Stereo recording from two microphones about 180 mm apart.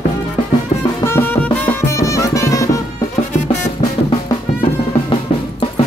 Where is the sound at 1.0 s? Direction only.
10° left (ahead or behind).